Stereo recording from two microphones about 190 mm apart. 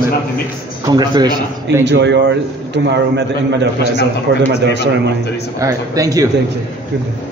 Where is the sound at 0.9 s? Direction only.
20° right (ahead or behind).